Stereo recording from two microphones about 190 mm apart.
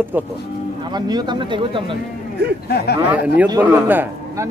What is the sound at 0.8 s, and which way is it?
Speech, 20° right (ahead or behind).